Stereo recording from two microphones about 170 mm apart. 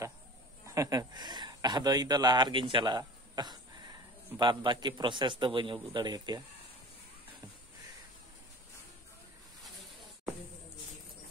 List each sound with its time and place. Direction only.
0.7 s a man's voice: 20° right (ahead or behind)